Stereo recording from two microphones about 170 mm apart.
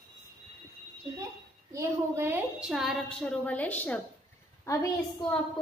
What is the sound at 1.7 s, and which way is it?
A woman's voice, 15° right (ahead or behind).